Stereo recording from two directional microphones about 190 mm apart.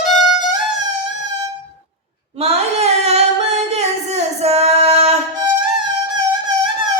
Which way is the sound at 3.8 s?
35° right (ahead or behind).